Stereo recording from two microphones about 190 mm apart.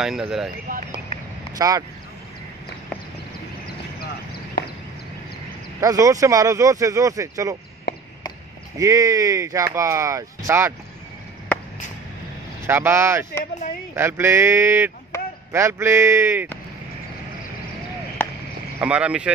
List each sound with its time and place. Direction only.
0.0 s speech: centre (ahead or behind)
0.7 s a sound: 45° right (ahead or behind)
1.6 s speech: 20° right (ahead or behind)
3.6 s chop: 55° left (ahead or behind)
5.8 s speech: 15° right (ahead or behind)
8.7 s speech: 15° right (ahead or behind)
12.6 s speech: 10° right (ahead or behind)
18.2 s frog: 10° left (ahead or behind)
18.8 s speech: 5° right (ahead or behind)